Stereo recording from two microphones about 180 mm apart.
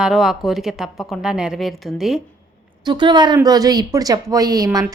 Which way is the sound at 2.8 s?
25° right (ahead or behind).